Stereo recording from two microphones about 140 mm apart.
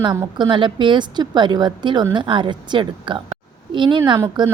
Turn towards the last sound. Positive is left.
turn(degrees=-30)  # may be behind; listen again after turning